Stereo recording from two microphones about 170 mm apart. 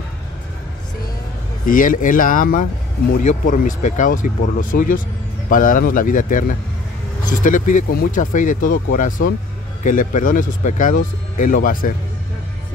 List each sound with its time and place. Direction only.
1.7 s speech: 55° left (ahead or behind)